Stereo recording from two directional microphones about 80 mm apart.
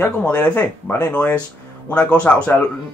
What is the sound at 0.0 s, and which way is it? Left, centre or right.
Speech, centre.